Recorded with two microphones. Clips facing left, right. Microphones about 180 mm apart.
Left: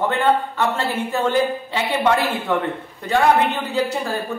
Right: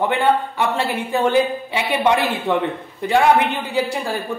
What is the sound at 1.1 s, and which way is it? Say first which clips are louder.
A man's voice: right 3 dB; 15° right (ahead or behind).